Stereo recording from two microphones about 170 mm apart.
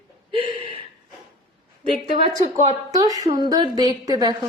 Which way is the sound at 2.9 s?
20° right (ahead or behind).